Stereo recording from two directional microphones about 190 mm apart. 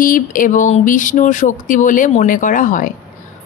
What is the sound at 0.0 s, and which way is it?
A woman's voice, 45° left (ahead or behind).